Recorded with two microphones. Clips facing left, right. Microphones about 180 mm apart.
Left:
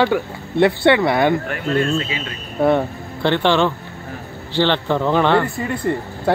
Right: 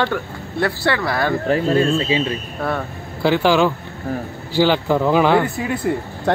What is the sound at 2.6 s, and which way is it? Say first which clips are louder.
Speech: left 9 dB; 20° left (ahead or behind).